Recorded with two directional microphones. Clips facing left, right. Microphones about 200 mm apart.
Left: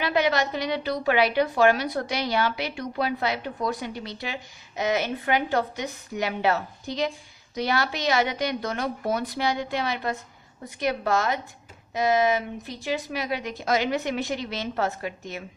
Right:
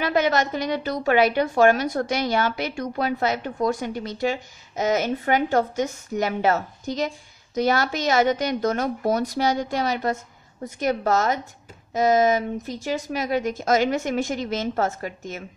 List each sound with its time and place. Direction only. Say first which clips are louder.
0.0 s a woman's voice: right 2 dB; 45° right (ahead or behind)